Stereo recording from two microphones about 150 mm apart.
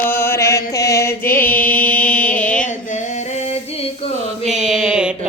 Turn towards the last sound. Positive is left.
turn(degrees=-5)  # may be behind; listen again after turning